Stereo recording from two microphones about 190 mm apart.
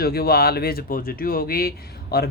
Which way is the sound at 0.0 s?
55° left (ahead or behind).